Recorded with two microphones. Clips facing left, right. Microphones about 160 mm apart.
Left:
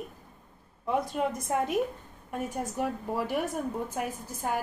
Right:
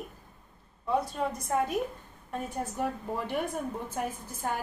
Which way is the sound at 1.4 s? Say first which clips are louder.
Right 1 dB; 20° left (ahead or behind).